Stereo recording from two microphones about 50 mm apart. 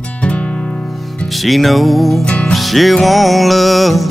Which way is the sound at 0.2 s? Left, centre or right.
Left.